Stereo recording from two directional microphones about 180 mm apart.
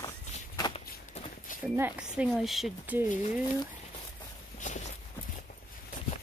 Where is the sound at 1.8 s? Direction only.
10° right (ahead or behind).